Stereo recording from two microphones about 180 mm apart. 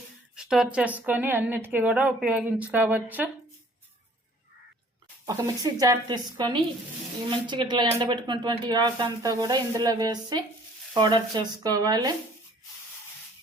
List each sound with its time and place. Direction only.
0.3 s a woman's voice: 5° right (ahead or behind)
5.2 s a woman's voice: 15° right (ahead or behind)